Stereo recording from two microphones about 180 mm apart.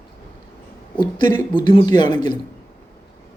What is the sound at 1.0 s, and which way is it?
A woman's voice, 25° left (ahead or behind).